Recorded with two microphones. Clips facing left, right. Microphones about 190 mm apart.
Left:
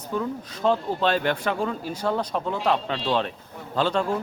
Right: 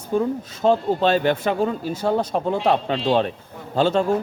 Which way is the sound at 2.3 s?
50° right (ahead or behind).